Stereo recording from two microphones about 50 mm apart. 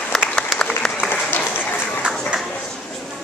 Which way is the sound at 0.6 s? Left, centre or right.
Centre.